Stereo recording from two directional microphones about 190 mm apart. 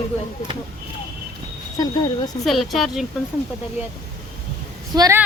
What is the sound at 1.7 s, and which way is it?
Speech, 20° left (ahead or behind).